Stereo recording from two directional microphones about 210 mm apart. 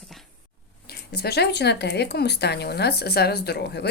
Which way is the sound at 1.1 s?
50° left (ahead or behind).